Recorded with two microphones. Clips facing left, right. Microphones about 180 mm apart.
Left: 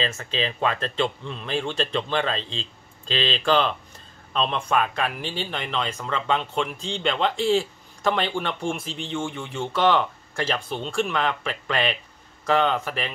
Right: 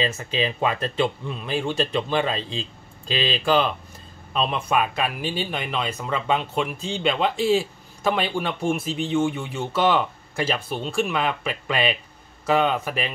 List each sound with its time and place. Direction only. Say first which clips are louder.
0.0 s speech: right 3 dB; 10° right (ahead or behind)